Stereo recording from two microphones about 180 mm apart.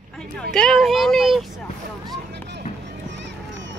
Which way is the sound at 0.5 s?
5° left (ahead or behind).